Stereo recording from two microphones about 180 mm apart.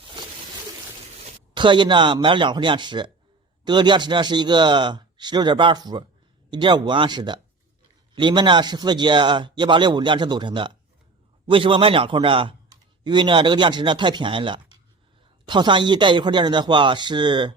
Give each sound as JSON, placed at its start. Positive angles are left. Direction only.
{"t": 1.5, "sound": "speech", "side_deg": -25}